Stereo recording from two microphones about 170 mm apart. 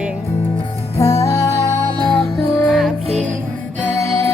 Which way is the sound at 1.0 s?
20° left (ahead or behind).